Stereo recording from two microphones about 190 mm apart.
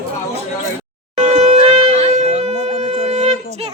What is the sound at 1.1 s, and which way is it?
Wind instrument, 35° right (ahead or behind).